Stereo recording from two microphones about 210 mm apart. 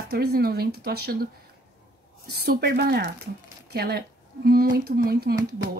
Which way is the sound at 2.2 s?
50° right (ahead or behind).